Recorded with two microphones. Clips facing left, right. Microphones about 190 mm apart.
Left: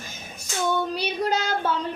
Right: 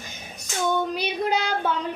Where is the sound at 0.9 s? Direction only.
15° right (ahead or behind).